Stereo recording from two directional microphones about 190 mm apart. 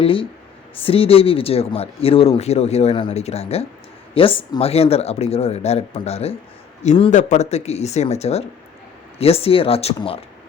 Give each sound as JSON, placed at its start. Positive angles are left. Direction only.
{"t": 0.0, "sound": "speech", "side_deg": 30}